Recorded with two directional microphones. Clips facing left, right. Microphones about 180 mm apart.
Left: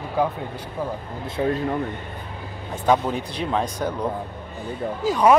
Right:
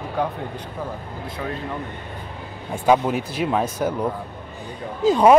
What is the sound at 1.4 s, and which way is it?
Speech, 30° left (ahead or behind).